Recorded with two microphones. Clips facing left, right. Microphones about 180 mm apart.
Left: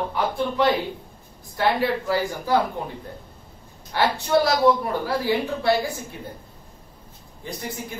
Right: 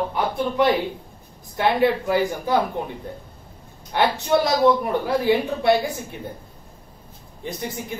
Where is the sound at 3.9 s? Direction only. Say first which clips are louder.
Right 1 dB; 20° right (ahead or behind).